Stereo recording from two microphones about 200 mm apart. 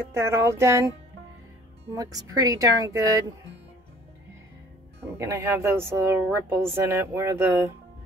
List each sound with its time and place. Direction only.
0.1 s speech: 15° right (ahead or behind)
2.0 s speech: 20° right (ahead or behind)
5.0 s speech: 15° right (ahead or behind)